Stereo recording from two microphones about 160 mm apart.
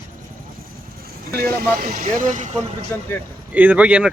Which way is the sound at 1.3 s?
70° right (ahead or behind).